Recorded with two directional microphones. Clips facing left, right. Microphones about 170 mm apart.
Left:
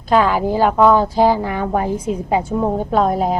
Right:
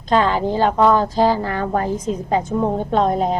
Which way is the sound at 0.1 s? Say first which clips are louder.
Left 2 dB; 10° left (ahead or behind).